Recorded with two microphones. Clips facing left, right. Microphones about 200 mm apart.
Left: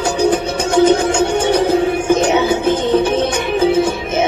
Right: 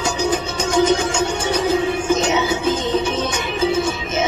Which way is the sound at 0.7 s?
60° left (ahead or behind).